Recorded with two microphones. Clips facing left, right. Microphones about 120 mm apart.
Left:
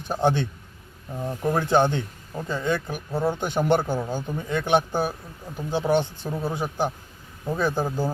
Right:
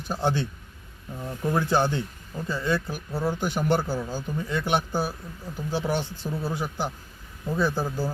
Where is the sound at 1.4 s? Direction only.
50° left (ahead or behind).